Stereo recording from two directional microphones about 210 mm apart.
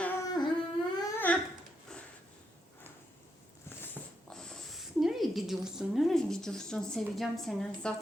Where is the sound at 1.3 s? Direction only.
5° left (ahead or behind).